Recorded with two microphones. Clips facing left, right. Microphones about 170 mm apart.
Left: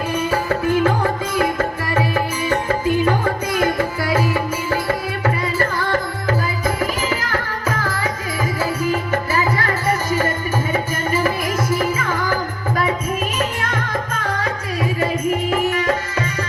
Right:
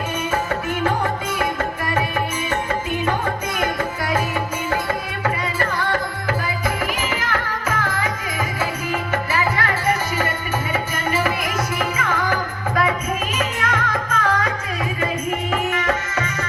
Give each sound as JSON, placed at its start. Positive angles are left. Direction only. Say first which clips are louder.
{"t": 6.2, "sound": "music", "louder": "left 3 dB", "side_deg": 40}
{"t": 11.7, "sound": "music", "louder": "left 3 dB", "side_deg": 30}
{"t": 15.4, "sound": "music", "louder": "left 3 dB", "side_deg": 35}